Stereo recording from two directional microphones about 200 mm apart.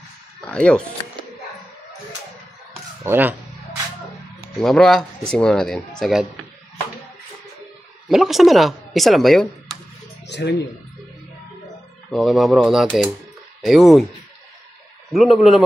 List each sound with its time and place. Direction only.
0.4 s speech: 5° left (ahead or behind)
3.0 s speech: 10° right (ahead or behind)
4.6 s speech: centre (ahead or behind)
8.1 s speech: centre (ahead or behind)
10.2 s speech: 60° left (ahead or behind)
12.1 s speech: centre (ahead or behind)
15.0 s speech: centre (ahead or behind)